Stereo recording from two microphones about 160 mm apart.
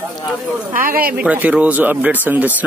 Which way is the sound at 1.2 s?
10° right (ahead or behind).